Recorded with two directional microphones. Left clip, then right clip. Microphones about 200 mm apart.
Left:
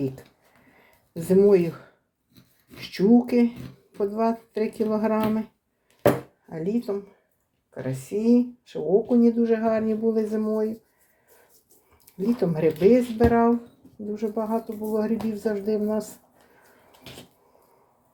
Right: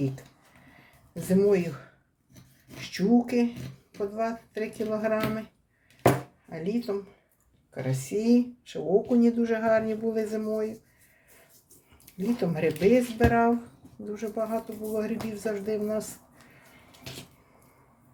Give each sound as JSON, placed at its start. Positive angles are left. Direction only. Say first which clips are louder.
{"t": 1.3, "sound": "speech", "louder": "left 6 dB", "side_deg": 25}
{"t": 2.7, "sound": "speech", "louder": "left 5 dB", "side_deg": 25}
{"t": 6.5, "sound": "speech", "louder": "left 3 dB", "side_deg": 10}
{"t": 12.1, "sound": "speech", "louder": "left 4 dB", "side_deg": 15}